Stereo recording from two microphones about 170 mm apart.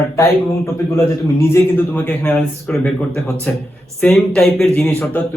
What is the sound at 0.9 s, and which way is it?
A man's voice, 15° left (ahead or behind).